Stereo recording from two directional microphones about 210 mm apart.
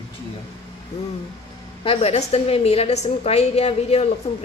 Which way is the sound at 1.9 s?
30° left (ahead or behind).